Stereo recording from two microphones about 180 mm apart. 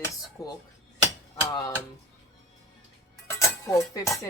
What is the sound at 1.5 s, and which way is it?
Speech, 20° left (ahead or behind).